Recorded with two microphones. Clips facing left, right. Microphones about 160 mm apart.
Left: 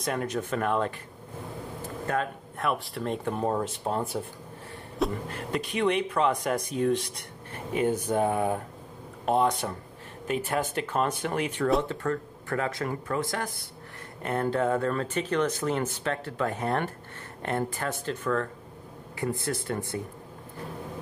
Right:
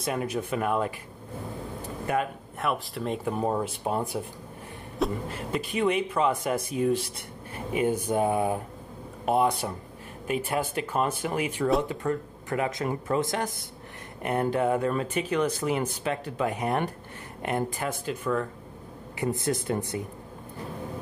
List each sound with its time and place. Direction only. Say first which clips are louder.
0.0 s speech: even; 5° right (ahead or behind)
2.0 s speech: right 2 dB; 5° right (ahead or behind)
4.9 s speech: even; centre (ahead or behind); by 20.0 s 20° right (ahead or behind)